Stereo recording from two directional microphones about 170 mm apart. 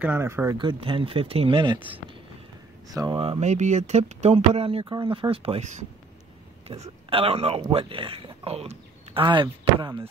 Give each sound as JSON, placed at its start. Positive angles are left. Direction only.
{"t": 0.0, "sound": "speech", "side_deg": -15}
{"t": 0.6, "sound": "speech", "side_deg": -30}
{"t": 3.0, "sound": "speech", "side_deg": -20}
{"t": 3.3, "sound": "speech", "side_deg": -40}
{"t": 6.7, "sound": "speech", "side_deg": -35}